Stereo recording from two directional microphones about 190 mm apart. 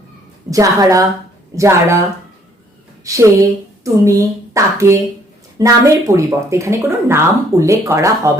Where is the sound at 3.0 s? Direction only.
15° right (ahead or behind).